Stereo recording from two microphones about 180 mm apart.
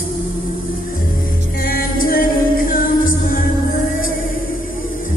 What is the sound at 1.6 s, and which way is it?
Music, 50° left (ahead or behind).